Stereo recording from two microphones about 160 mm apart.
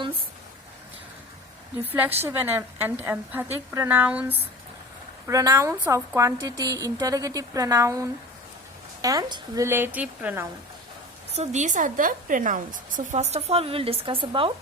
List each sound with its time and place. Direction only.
1.8 s a woman's voice: 10° right (ahead or behind)
5.2 s a woman's voice: 20° right (ahead or behind)
11.3 s a woman's voice: 50° right (ahead or behind)